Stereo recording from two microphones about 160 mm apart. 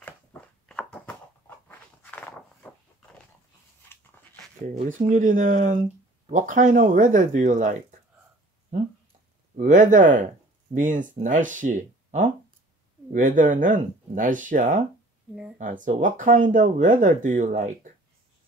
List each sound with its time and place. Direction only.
0.0 s a sound: 5° left (ahead or behind)
1.7 s dog: 10° left (ahead or behind)
4.8 s speech: 55° right (ahead or behind)
9.6 s speech: 50° right (ahead or behind)